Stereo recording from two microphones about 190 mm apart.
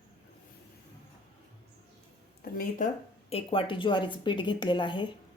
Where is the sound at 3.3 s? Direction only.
30° left (ahead or behind).